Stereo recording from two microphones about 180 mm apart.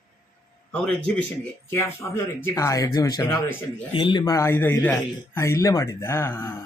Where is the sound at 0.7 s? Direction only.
5° left (ahead or behind).